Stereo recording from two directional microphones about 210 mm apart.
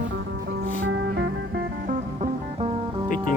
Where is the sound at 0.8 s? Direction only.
55° right (ahead or behind).